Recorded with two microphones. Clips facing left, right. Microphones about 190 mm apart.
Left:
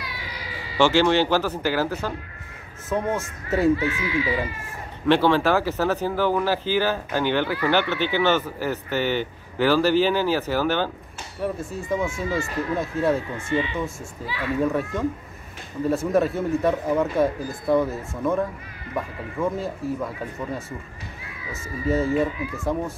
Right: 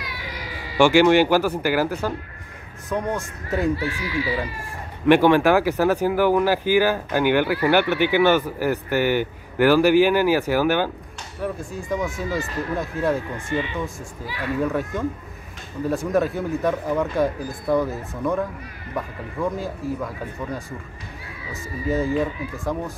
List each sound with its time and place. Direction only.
0.7 s speech: 15° right (ahead or behind)
2.9 s speech: 5° left (ahead or behind)
3.7 s speech: 35° right (ahead or behind)
5.0 s speech: 15° right (ahead or behind)
11.4 s speech: centre (ahead or behind)
14.6 s speech: centre (ahead or behind)
21.5 s speech: centre (ahead or behind)